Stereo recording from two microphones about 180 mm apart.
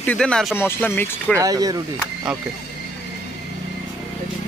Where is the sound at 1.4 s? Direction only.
20° right (ahead or behind).